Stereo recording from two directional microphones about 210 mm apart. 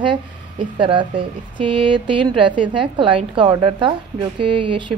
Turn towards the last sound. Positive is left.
turn(degrees=-25)  # may be behind; listen again after turning